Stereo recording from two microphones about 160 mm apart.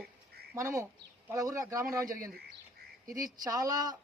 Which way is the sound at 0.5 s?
20° right (ahead or behind).